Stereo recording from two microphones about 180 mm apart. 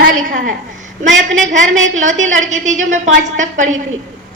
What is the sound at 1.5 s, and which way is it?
Speech, 90° right.